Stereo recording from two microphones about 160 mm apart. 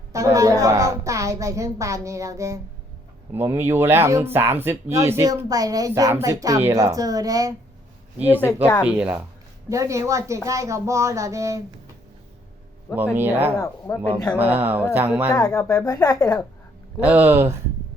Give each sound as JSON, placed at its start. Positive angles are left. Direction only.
{"t": 0.1, "sound": "a sound", "side_deg": -20}
{"t": 3.3, "sound": "speech", "side_deg": -15}
{"t": 8.8, "sound": "speech", "side_deg": -10}
{"t": 9.6, "sound": "speech", "side_deg": -20}
{"t": 13.1, "sound": "speech", "side_deg": -15}
{"t": 13.6, "sound": "speech", "side_deg": 20}
{"t": 14.3, "sound": "speech", "side_deg": -10}
{"t": 15.3, "sound": "speech", "side_deg": 20}
{"t": 17.0, "sound": "speech", "side_deg": -10}